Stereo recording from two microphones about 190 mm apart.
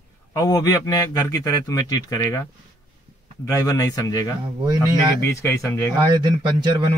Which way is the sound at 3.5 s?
20° left (ahead or behind).